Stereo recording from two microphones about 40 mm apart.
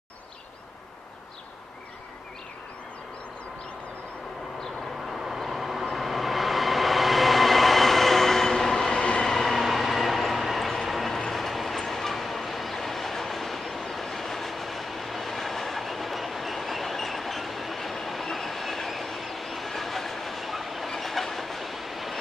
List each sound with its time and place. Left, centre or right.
5.0 s vehicle: centre
8.9 s train: left
9.2 s train: centre